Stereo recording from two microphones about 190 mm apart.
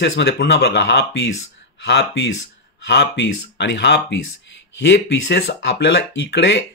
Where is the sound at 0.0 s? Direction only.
65° left (ahead or behind).